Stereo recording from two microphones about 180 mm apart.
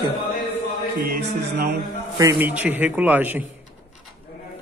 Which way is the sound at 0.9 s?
60° right (ahead or behind).